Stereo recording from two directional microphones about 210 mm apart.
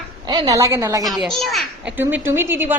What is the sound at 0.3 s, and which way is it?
Speech, 20° right (ahead or behind).